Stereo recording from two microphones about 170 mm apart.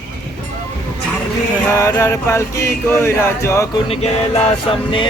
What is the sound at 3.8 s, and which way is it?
Music, 35° left (ahead or behind).